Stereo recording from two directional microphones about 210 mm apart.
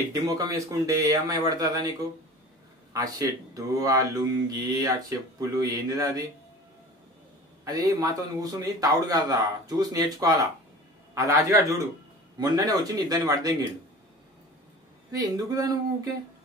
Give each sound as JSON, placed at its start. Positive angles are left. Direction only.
{"t": 0.1, "sound": "speech", "side_deg": -15}
{"t": 2.9, "sound": "speech", "side_deg": -15}
{"t": 7.6, "sound": "speech", "side_deg": -15}
{"t": 15.0, "sound": "speech", "side_deg": -15}